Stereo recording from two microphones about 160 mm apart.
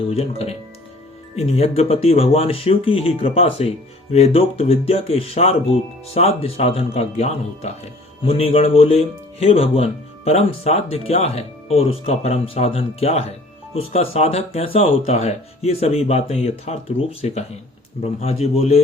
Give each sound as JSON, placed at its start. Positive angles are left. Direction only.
{"t": 0.1, "sound": "speech", "side_deg": 40}